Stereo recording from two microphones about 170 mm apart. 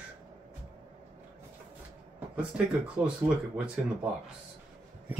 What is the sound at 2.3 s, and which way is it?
Speech, 5° right (ahead or behind).